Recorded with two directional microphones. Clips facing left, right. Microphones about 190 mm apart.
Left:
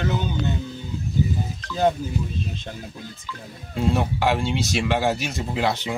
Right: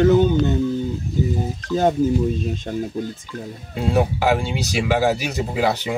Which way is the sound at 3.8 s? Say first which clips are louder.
Right 3 dB; 5° right (ahead or behind).